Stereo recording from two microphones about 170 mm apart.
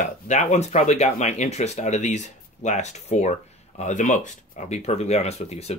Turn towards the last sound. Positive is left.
turn(degrees=40)  # may be behind; listen again after turning